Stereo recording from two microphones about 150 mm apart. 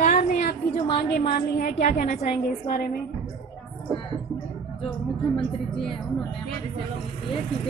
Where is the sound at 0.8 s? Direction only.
35° left (ahead or behind).